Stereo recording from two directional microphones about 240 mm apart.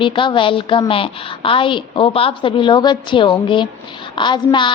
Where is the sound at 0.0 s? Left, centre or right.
Centre.